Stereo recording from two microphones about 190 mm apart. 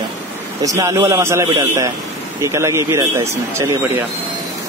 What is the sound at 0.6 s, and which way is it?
Speech, 15° right (ahead or behind).